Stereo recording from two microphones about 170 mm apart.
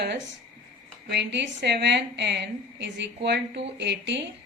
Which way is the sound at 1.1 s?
90° right.